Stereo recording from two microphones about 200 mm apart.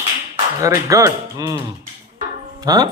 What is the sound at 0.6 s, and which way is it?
Speech, 15° right (ahead or behind).